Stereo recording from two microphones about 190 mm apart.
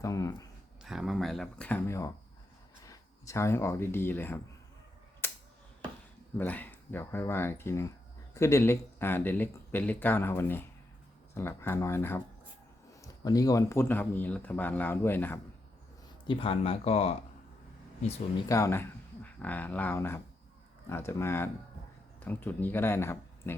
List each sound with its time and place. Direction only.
0.0 s a sound: 20° left (ahead or behind)
0.8 s speech: centre (ahead or behind)
5.2 s a sound: 10° left (ahead or behind)
6.3 s speech: 10° left (ahead or behind)
16.2 s speech: 25° left (ahead or behind)
18.4 s speech: 15° left (ahead or behind)